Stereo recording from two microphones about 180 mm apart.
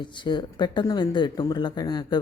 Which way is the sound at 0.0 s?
25° left (ahead or behind).